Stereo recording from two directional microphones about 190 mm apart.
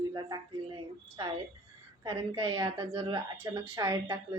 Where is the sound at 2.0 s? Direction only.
25° right (ahead or behind).